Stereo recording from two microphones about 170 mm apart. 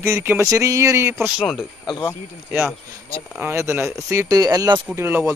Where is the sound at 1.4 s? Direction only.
Centre (ahead or behind).